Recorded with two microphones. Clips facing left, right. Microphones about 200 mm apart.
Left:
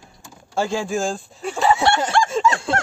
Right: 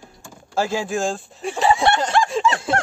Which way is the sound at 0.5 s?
Centre (ahead or behind).